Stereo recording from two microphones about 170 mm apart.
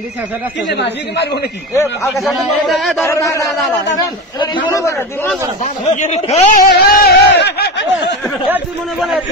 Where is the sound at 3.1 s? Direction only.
20° left (ahead or behind).